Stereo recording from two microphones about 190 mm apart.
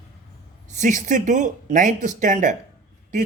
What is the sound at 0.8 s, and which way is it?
Speech, 40° right (ahead or behind).